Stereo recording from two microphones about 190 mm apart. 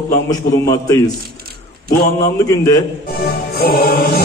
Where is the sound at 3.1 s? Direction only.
55° left (ahead or behind).